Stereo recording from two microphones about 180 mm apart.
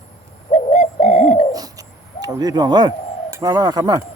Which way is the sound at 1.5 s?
20° right (ahead or behind).